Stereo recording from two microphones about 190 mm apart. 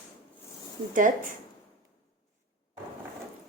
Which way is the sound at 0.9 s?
45° right (ahead or behind).